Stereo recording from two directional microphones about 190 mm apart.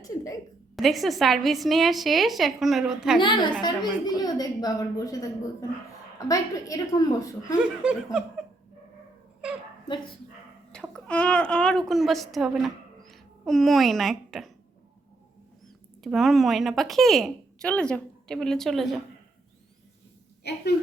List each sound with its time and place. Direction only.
0.8 s speech: centre (ahead or behind)
3.2 s a woman's voice: 25° left (ahead or behind)
7.6 s speech: 5° right (ahead or behind)
10.7 s a woman's voice: 5° left (ahead or behind)
16.0 s speech: centre (ahead or behind)
20.4 s speech: 60° left (ahead or behind)